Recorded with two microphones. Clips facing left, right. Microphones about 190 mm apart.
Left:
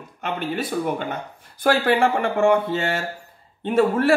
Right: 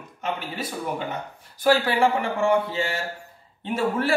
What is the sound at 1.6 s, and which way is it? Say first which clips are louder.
Speech: left 1 dB; 55° left (ahead or behind).